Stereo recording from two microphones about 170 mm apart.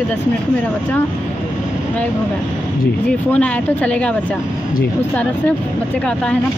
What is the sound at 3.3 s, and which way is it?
Speech, 10° left (ahead or behind).